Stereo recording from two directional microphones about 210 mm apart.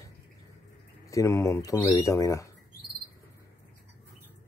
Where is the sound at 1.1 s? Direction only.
15° left (ahead or behind).